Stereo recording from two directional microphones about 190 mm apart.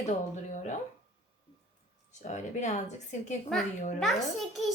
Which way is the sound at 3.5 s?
Centre (ahead or behind).